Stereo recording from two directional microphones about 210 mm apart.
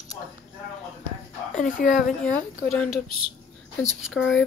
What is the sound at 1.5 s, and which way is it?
Speech, 40° left (ahead or behind).